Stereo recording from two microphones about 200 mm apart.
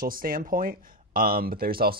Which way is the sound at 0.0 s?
45° right (ahead or behind).